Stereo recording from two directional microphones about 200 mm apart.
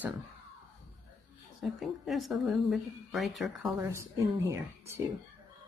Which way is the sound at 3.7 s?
15° right (ahead or behind).